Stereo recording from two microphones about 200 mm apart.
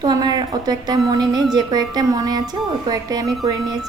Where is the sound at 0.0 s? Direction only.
20° right (ahead or behind).